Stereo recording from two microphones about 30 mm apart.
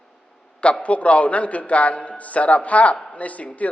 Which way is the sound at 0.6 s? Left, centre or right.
Left.